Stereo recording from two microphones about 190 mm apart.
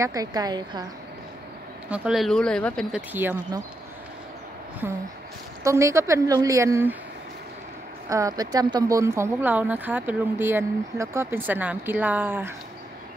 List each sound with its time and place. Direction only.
0.0 s a woman's voice: 20° right (ahead or behind)
1.9 s speech: 5° right (ahead or behind)
3.1 s speech: 10° right (ahead or behind)
4.8 s speech: 10° right (ahead or behind)
8.1 s speech: 20° right (ahead or behind)